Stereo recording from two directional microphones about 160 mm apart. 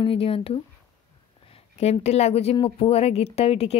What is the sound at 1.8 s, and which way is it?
Speech, 40° left (ahead or behind).